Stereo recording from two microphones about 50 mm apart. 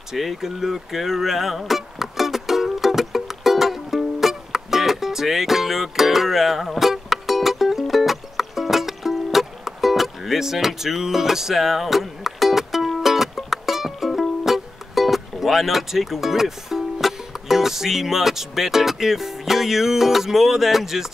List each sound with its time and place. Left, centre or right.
0.1 s music: centre